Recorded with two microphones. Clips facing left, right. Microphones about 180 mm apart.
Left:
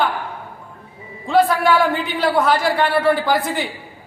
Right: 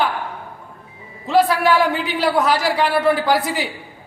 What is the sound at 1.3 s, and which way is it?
A man's voice, 5° right (ahead or behind).